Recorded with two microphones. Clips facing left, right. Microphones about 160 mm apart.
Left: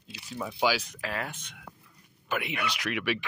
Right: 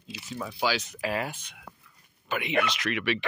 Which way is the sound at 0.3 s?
5° left (ahead or behind).